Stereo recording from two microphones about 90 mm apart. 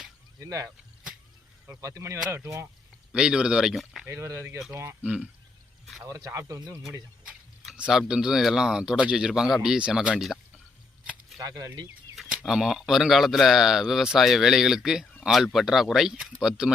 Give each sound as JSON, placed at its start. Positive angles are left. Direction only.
{"t": 0.3, "sound": "speech", "side_deg": -40}
{"t": 3.1, "sound": "speech", "side_deg": -10}
{"t": 4.0, "sound": "speech", "side_deg": -30}
{"t": 5.0, "sound": "speech", "side_deg": -15}
{"t": 6.1, "sound": "speech", "side_deg": -40}
{"t": 7.8, "sound": "speech", "side_deg": -10}
{"t": 11.3, "sound": "speech", "side_deg": -45}
{"t": 12.1, "sound": "speech", "side_deg": -5}